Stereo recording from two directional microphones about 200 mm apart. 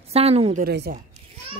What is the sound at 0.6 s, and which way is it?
Speech, 50° right (ahead or behind).